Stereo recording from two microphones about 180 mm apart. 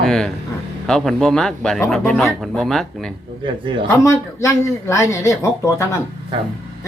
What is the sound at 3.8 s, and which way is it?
Speech, 15° left (ahead or behind).